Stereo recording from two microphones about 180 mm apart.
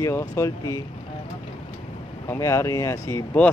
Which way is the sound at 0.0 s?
20° left (ahead or behind).